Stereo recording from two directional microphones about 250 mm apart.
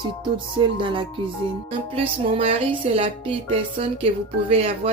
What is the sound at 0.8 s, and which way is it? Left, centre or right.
Speech, centre.